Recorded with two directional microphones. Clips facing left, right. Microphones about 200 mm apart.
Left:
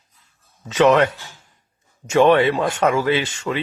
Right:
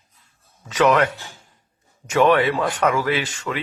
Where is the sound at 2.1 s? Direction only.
25° left (ahead or behind).